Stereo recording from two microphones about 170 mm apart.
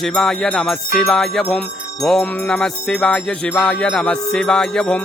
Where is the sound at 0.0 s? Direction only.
Centre (ahead or behind).